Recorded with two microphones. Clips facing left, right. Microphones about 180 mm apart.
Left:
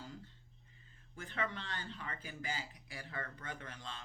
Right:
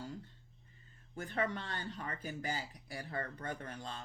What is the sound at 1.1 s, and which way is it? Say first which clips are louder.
Speech: right 5 dB; 40° right (ahead or behind).